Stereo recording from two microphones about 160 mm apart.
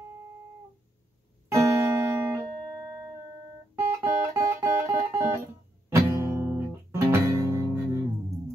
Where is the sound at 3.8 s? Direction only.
15° right (ahead or behind).